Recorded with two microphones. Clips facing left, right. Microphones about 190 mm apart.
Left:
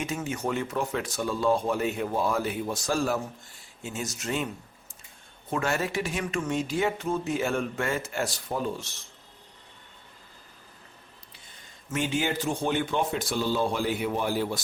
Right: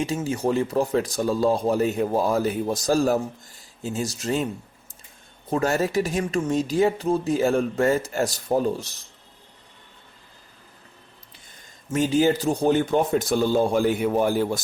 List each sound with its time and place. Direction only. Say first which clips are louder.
0.0 s speech: right 6 dB; 30° right (ahead or behind)
5.5 s speech: right 6 dB; 40° right (ahead or behind)
11.9 s speech: right 8 dB; 35° right (ahead or behind)